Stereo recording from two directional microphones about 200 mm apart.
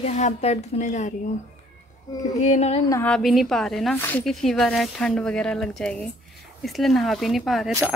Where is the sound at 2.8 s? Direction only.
15° left (ahead or behind).